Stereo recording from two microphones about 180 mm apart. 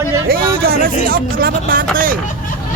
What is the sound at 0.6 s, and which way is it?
Speech, 55° right (ahead or behind).